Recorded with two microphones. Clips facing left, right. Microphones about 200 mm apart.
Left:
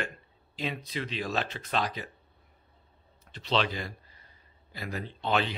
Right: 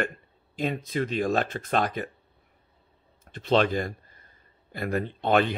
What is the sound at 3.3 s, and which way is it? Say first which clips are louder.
Speech: right 7 dB; 50° right (ahead or behind).